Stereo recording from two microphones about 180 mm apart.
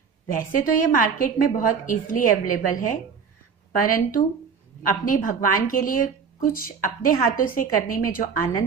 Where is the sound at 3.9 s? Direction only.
50° left (ahead or behind).